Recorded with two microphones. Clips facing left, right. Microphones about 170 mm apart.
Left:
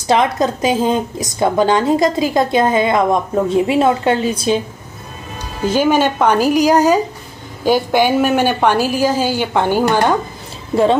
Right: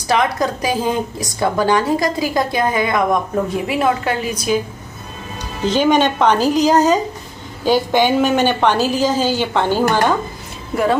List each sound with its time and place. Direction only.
0.1 s a woman's voice: 20° left (ahead or behind)
5.6 s a woman's voice: 10° left (ahead or behind)